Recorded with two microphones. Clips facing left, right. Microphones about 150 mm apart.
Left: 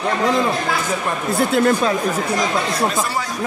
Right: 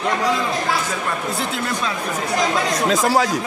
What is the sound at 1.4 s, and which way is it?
Speech, 50° left (ahead or behind).